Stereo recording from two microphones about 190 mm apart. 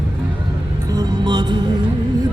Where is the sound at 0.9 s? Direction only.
20° right (ahead or behind).